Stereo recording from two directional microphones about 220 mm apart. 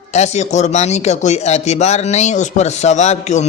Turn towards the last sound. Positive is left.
turn(degrees=30)  # may be behind; listen again after turning